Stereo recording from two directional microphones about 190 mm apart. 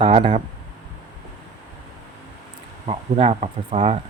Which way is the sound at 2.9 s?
35° right (ahead or behind).